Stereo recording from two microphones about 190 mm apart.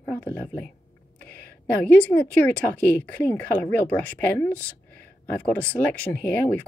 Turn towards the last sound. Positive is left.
turn(degrees=10)  # may be behind; listen again after turning